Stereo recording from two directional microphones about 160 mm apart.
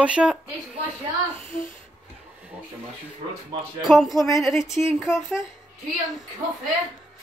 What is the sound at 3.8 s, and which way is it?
Speech, centre (ahead or behind).